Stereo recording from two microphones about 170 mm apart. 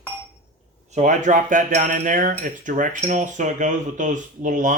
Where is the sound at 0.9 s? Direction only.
45° right (ahead or behind).